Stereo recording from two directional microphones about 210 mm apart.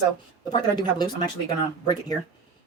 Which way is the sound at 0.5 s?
20° left (ahead or behind).